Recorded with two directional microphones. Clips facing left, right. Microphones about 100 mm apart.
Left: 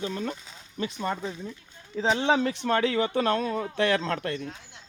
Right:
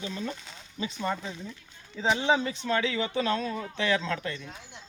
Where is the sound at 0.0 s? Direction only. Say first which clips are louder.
Left 3 dB; 50° left (ahead or behind).